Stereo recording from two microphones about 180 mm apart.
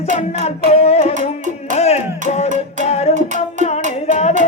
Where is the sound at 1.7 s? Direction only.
35° left (ahead or behind).